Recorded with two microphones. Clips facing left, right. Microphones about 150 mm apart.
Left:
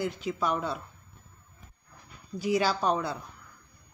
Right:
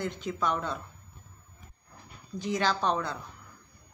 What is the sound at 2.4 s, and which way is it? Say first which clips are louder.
Speech: left 2 dB; 10° left (ahead or behind).